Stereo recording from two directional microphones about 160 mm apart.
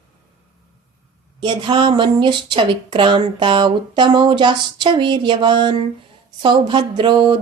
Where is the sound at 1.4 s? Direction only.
30° right (ahead or behind).